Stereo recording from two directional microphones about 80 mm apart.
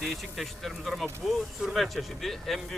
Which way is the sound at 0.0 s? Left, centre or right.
Centre.